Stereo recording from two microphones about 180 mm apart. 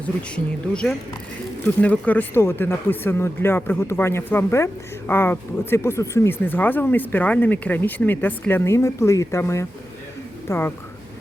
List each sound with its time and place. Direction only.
0.0 s speech: 5° left (ahead or behind)